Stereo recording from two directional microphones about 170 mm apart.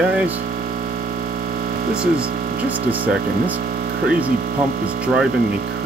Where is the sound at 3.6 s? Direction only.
60° right (ahead or behind).